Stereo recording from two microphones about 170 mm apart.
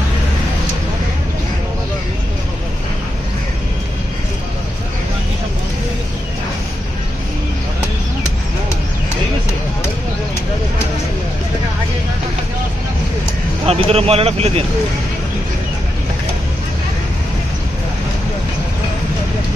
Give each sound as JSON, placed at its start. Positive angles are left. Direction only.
{"t": 13.7, "sound": "speech", "side_deg": -35}